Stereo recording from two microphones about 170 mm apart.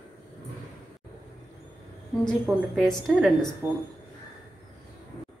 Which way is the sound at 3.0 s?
Centre (ahead or behind).